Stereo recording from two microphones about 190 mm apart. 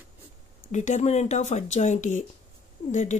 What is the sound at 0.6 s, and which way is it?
Speech, 40° left (ahead or behind).